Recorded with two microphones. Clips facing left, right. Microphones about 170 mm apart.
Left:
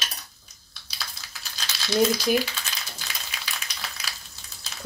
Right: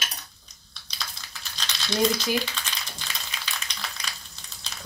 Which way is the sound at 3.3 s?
5° left (ahead or behind).